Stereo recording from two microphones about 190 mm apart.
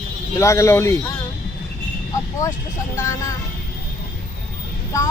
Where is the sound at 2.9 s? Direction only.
15° left (ahead or behind).